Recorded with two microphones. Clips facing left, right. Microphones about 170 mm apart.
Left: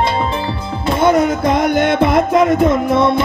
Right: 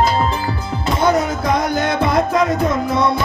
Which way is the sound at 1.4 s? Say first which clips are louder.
Left 4 dB; 25° left (ahead or behind).